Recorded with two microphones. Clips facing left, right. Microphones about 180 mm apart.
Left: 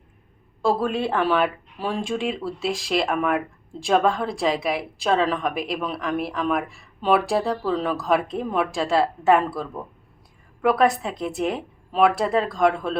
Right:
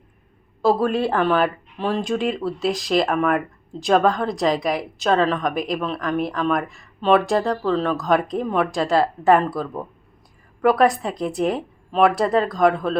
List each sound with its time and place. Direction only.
0.6 s speech: 5° right (ahead or behind)
10.6 s speech: centre (ahead or behind)